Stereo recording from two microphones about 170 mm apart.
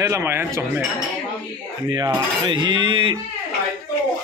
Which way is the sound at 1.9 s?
25° right (ahead or behind).